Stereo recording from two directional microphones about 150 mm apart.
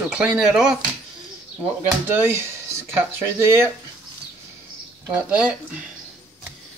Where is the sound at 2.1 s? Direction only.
15° right (ahead or behind).